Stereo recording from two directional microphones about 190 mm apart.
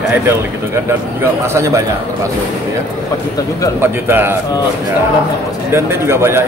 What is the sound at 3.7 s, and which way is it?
Speech, 10° right (ahead or behind).